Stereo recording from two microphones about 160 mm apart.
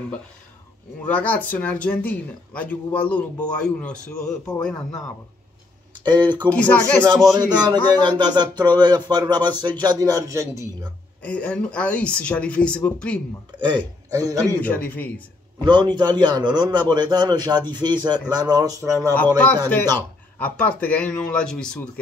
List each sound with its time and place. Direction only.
1.0 s speech: 10° left (ahead or behind)
6.0 s speech: 30° right (ahead or behind)
11.2 s speech: 10° left (ahead or behind)
13.6 s speech: 30° right (ahead or behind)
14.6 s speech: 10° left (ahead or behind)
15.6 s speech: 25° right (ahead or behind)
19.1 s speech: 10° left (ahead or behind)